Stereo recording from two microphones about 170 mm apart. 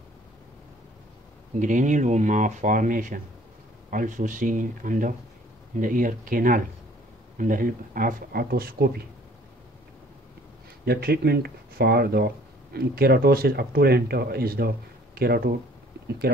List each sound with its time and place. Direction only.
1.6 s speech: 50° right (ahead or behind); by 9.0 s 65° right (ahead or behind)
10.9 s speech: 65° right (ahead or behind)